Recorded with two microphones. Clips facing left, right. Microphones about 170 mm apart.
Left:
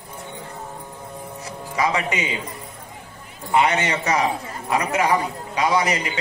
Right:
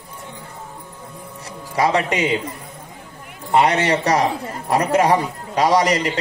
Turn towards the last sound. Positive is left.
turn(degrees=-35)  # may be behind; listen again after turning